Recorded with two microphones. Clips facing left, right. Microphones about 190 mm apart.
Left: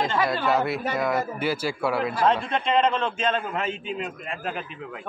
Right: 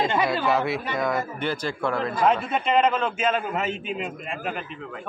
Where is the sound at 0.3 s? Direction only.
Centre (ahead or behind).